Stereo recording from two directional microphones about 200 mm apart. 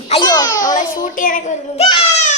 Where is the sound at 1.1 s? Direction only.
45° left (ahead or behind).